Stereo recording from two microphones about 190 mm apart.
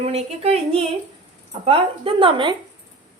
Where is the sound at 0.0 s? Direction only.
30° right (ahead or behind).